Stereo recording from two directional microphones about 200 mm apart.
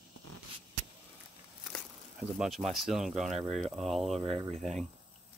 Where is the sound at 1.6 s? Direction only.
5° right (ahead or behind).